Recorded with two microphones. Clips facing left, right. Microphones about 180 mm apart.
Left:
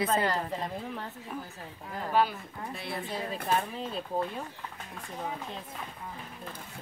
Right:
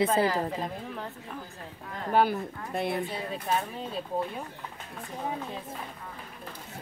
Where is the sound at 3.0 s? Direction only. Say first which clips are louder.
Even; centre (ahead or behind).